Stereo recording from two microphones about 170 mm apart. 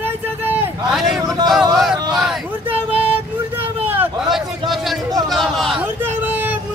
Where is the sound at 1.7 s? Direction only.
Centre (ahead or behind).